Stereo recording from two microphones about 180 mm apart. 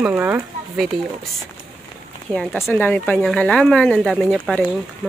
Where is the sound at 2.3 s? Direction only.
Centre (ahead or behind).